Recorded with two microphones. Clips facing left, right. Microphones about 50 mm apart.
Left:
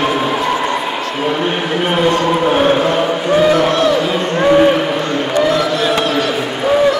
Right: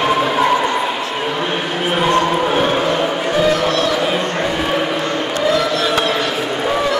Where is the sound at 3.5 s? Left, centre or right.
Left.